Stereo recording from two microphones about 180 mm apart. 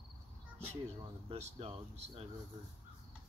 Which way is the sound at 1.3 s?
35° right (ahead or behind).